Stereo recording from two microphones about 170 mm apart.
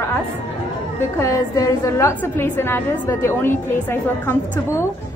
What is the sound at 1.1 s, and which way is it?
A woman's voice, 15° left (ahead or behind).